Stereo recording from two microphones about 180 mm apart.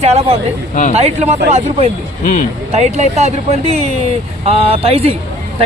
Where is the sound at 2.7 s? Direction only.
40° right (ahead or behind).